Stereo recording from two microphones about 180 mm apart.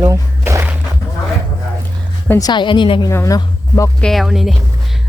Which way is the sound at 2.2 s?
10° left (ahead or behind).